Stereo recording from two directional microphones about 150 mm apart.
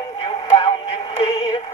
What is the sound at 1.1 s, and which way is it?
Synthetic singing, 40° left (ahead or behind).